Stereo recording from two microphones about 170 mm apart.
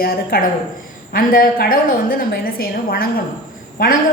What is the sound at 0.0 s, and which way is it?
A woman's voice, 60° left (ahead or behind).